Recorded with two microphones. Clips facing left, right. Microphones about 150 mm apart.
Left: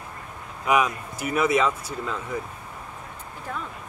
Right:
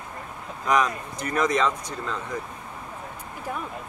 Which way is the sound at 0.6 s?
10° left (ahead or behind).